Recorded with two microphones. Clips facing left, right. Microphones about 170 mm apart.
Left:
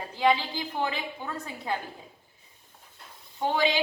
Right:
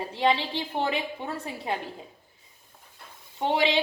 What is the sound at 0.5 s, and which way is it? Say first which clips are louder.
A woman's voice: right 3 dB; 30° right (ahead or behind).